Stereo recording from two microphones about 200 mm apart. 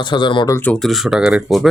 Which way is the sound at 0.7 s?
Centre (ahead or behind).